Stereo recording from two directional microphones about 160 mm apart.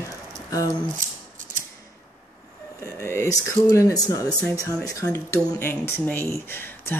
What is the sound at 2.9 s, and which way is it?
Speech, 20° left (ahead or behind).